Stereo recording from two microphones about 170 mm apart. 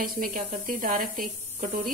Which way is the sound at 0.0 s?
55° right (ahead or behind).